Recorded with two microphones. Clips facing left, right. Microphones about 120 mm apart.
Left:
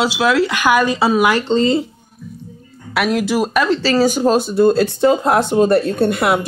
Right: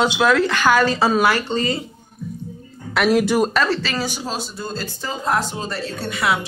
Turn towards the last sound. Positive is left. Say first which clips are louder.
# left 7 dB
turn(degrees=55)  # may be behind; listen again after turning